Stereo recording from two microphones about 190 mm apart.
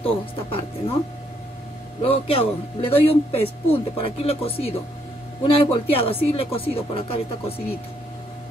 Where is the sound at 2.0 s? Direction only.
30° left (ahead or behind).